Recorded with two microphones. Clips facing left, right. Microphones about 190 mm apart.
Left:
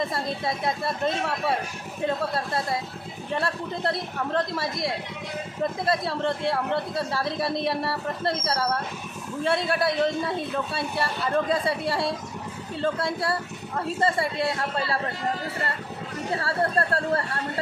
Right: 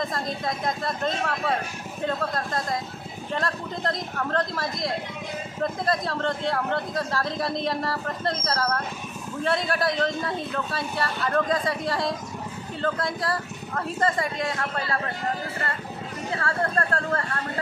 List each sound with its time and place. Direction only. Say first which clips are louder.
0.1 s speech: left 1 dB; 5° left (ahead or behind)
3.3 s speech: left 1 dB; 10° left (ahead or behind)
5.9 s speech: left 2 dB; 5° left (ahead or behind)
13.9 s a man's voice: left 1 dB; 30° left (ahead or behind)
16.3 s speech: left 1 dB; 35° left (ahead or behind)